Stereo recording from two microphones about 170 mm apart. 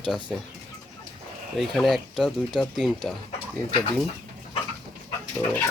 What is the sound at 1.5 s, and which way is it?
Speech, centre (ahead or behind).